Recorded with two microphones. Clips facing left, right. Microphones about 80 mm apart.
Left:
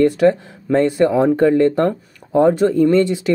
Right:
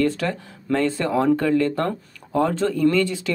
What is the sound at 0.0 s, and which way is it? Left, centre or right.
Speech, left.